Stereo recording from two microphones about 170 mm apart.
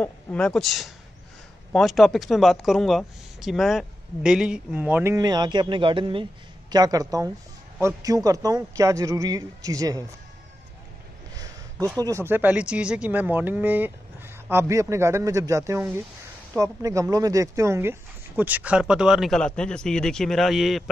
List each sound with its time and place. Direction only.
0.0 s a man's voice: 5° left (ahead or behind); by 10.0 s 20° right (ahead or behind)
12.0 s speech: 15° right (ahead or behind); by 20.9 s centre (ahead or behind)